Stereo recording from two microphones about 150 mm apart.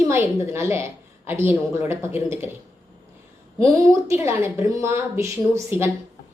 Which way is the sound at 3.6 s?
20° right (ahead or behind).